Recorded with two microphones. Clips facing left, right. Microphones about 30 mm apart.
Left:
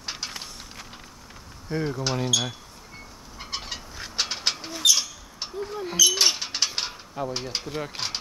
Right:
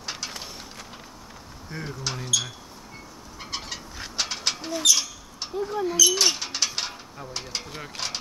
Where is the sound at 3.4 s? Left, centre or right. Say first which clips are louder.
Even; centre.